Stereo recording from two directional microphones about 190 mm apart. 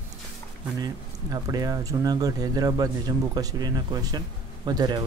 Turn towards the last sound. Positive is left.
turn(degrees=-20)  # may be behind; listen again after turning